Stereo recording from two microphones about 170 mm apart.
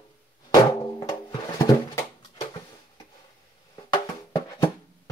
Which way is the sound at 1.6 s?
20° left (ahead or behind).